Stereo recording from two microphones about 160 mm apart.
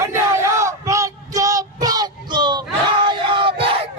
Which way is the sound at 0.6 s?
20° right (ahead or behind).